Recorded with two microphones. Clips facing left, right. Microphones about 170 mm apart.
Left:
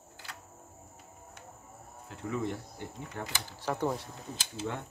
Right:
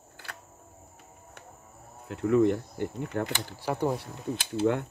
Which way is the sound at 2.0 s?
65° right (ahead or behind).